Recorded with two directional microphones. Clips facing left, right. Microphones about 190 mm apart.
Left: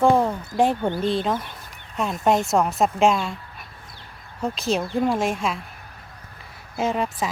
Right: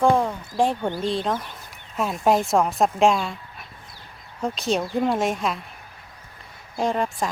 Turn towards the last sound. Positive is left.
turn(degrees=0)  # may be behind; listen again after turning